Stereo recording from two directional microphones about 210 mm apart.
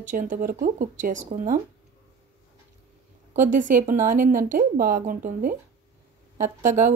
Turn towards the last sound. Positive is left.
turn(degrees=-35)  # may be behind; listen again after turning